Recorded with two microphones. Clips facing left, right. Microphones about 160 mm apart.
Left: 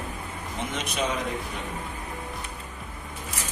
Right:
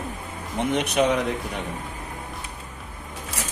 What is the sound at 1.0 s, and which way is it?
Speech, 60° right (ahead or behind).